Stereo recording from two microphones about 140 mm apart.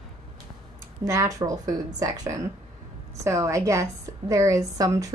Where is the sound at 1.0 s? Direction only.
25° right (ahead or behind).